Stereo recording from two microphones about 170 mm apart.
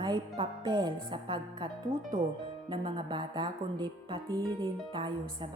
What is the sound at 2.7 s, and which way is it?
A woman's voice, 25° right (ahead or behind).